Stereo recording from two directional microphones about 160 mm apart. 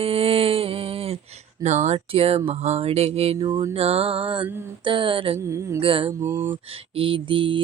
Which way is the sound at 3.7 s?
40° right (ahead or behind).